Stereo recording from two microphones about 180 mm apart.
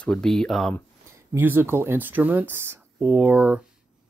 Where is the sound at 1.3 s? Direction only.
10° right (ahead or behind).